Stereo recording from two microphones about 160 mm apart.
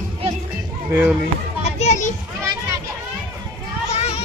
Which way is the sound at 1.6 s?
45° left (ahead or behind).